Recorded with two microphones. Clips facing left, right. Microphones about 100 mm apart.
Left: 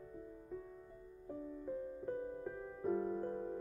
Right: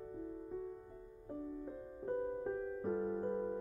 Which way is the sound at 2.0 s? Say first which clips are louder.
Right 8 dB; 35° right (ahead or behind).